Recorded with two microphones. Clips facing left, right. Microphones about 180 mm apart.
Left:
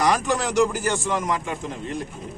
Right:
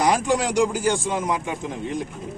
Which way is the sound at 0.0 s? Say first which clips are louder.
Right 1 dB; 15° right (ahead or behind).